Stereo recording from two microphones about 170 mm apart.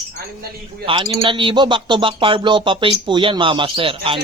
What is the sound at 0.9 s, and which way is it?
Speech, 30° right (ahead or behind).